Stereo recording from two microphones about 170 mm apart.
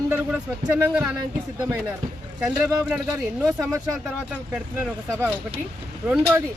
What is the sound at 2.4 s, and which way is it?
Speech, centre (ahead or behind).